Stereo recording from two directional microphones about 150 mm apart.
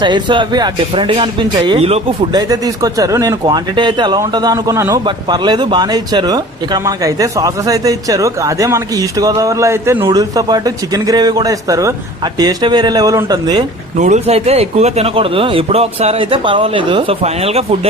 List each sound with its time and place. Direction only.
0.0 s a man's voice: 30° right (ahead or behind)
2.3 s speech: 25° right (ahead or behind)
10.1 s speech: 25° right (ahead or behind)
14.0 s a man's voice: 50° right (ahead or behind)